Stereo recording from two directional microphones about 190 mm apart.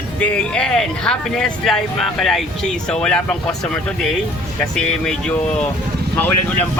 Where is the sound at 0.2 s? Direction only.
5° left (ahead or behind).